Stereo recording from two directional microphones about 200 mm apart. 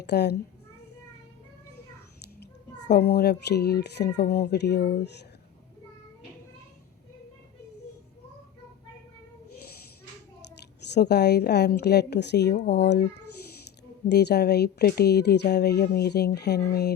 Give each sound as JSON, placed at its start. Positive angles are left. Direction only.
{"t": 0.0, "sound": "speech", "side_deg": 55}
{"t": 2.4, "sound": "speech", "side_deg": 55}
{"t": 10.9, "sound": "speech", "side_deg": 55}
{"t": 14.1, "sound": "speech", "side_deg": 55}